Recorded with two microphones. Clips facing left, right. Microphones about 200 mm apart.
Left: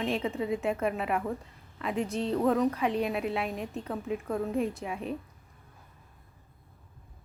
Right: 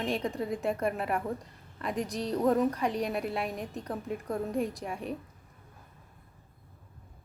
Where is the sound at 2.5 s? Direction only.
Centre (ahead or behind).